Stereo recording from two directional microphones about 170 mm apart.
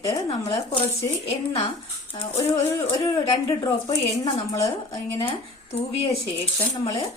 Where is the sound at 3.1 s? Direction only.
25° left (ahead or behind).